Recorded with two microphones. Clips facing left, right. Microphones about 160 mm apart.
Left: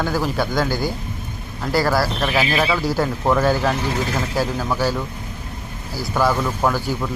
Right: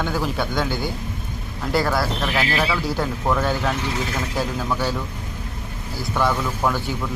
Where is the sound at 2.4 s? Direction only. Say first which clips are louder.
Left 3 dB; 15° left (ahead or behind).